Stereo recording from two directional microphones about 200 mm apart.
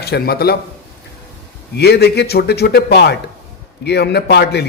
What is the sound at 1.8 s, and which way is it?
A man's voice, 55° left (ahead or behind).